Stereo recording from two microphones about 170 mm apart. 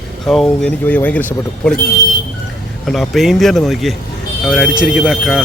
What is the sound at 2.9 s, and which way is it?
Speech, centre (ahead or behind).